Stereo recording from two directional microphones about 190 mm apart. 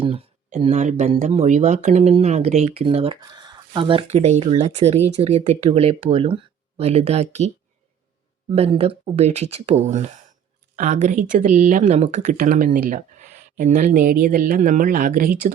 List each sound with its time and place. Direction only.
0.0 s speech: 30° right (ahead or behind); by 15.5 s 50° right (ahead or behind)